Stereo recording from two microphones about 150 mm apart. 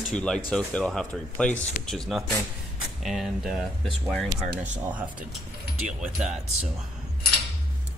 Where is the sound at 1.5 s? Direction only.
55° left (ahead or behind).